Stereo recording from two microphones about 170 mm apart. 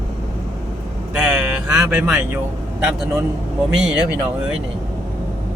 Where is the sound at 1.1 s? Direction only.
10° right (ahead or behind).